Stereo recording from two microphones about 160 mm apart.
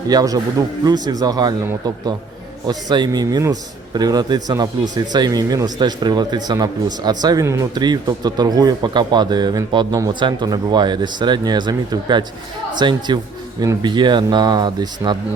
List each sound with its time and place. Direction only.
0.1 s speech: 25° right (ahead or behind)